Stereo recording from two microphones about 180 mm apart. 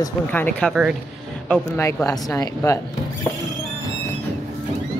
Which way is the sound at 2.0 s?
20° left (ahead or behind).